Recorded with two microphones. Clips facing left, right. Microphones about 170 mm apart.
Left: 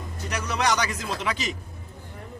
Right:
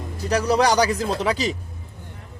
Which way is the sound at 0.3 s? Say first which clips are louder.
Right 7 dB; 35° right (ahead or behind).